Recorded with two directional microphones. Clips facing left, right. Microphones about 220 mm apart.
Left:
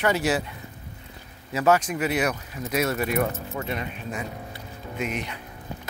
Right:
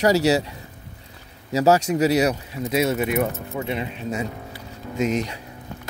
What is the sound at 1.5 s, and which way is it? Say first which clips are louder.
Speech: right 4 dB; 35° right (ahead or behind).